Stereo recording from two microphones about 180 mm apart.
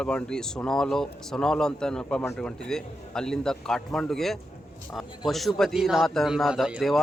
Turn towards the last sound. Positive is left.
turn(degrees=0)  # may be behind; listen again after turning